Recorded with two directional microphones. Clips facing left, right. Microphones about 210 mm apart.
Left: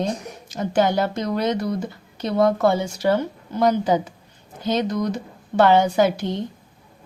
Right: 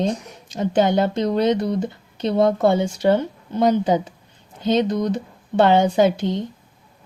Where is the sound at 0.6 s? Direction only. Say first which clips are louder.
Right 2 dB; 25° right (ahead or behind).